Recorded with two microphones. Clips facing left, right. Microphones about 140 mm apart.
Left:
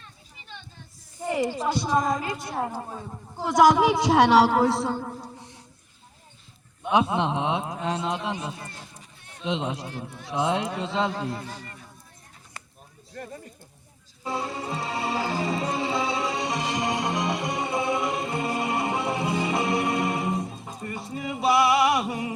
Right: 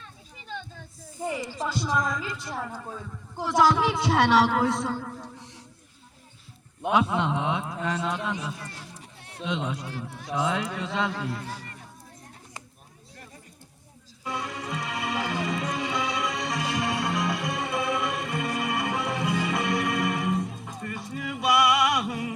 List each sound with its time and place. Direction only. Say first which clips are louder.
1.6 s a woman's voice: left 1 dB; 55° left (ahead or behind)
3.4 s speech: left 4 dB; 15° left (ahead or behind)
4.0 s a woman's voice: left 3 dB; 40° left (ahead or behind)
6.9 s a man's voice: left 2 dB; 20° left (ahead or behind)
8.6 s run: right 1 dB; 85° right
9.5 s a man's voice: left 2 dB; 30° left (ahead or behind)
14.3 s music: left 3 dB; 30° left (ahead or behind)